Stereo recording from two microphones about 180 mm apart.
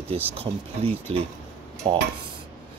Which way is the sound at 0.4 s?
30° right (ahead or behind).